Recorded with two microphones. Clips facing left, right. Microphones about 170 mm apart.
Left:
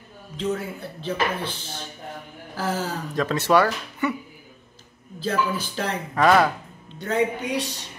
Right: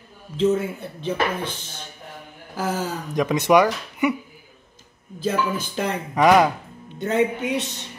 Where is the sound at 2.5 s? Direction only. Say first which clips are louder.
Right 1 dB; 20° right (ahead or behind).